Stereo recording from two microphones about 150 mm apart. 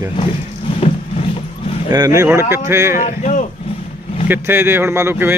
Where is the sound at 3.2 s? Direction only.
55° left (ahead or behind).